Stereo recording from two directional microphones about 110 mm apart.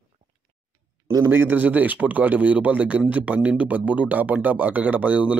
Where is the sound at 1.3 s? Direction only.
20° right (ahead or behind).